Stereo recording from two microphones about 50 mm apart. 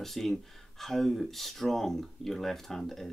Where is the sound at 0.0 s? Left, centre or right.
Centre.